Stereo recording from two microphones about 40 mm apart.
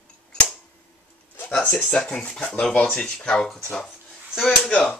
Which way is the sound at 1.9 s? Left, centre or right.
Centre.